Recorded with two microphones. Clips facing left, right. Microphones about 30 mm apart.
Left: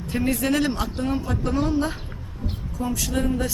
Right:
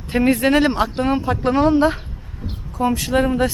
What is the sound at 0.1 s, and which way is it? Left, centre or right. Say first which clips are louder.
Speech: right 7 dB; right.